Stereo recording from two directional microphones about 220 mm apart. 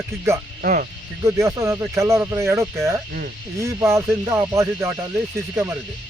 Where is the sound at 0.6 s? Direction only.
40° right (ahead or behind).